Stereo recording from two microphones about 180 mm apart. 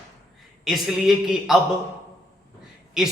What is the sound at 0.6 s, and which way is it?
Speech, centre (ahead or behind).